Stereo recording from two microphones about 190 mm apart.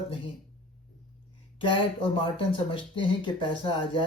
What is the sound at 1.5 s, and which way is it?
Speech, 25° left (ahead or behind).